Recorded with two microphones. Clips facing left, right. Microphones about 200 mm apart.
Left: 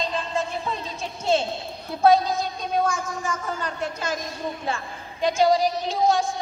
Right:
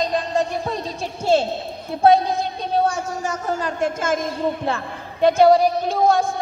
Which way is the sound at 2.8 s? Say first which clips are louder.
Right 4 dB; 40° right (ahead or behind).